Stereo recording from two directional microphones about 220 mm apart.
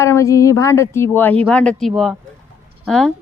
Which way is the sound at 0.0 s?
15° left (ahead or behind).